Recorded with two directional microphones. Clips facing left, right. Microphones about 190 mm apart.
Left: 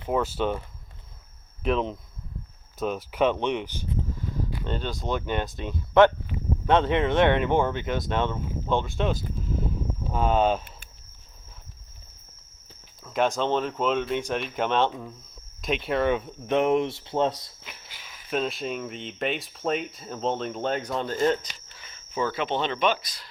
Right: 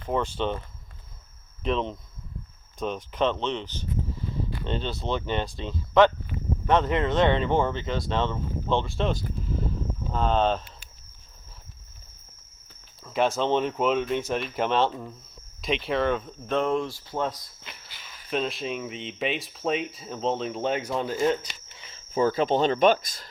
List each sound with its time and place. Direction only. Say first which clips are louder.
0.0 s speech: left 1 dB; 5° left (ahead or behind)
1.6 s speech: left 2 dB; 5° left (ahead or behind)
13.1 s speech: right 1 dB; centre (ahead or behind); by 17.3 s 25° left (ahead or behind)
17.6 s speech: even; 5° left (ahead or behind)
21.9 s speech: right 5 dB; 40° right (ahead or behind)